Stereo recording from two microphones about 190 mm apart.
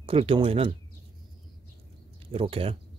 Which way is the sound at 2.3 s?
30° right (ahead or behind).